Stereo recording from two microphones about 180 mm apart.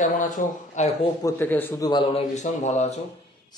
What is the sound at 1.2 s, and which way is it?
Speech, 10° left (ahead or behind).